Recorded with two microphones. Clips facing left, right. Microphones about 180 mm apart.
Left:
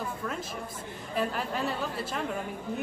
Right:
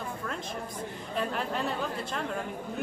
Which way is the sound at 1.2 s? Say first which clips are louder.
Left 1 dB; centre (ahead or behind).